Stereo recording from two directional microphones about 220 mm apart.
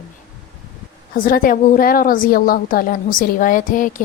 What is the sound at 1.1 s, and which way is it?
A woman's voice, 40° left (ahead or behind).